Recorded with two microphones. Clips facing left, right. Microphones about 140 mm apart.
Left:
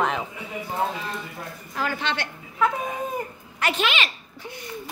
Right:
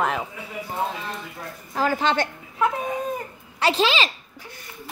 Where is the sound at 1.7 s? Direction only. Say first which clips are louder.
Right 6 dB; 40° right (ahead or behind).